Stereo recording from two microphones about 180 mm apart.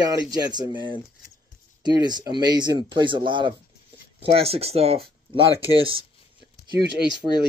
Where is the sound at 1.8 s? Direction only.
25° right (ahead or behind).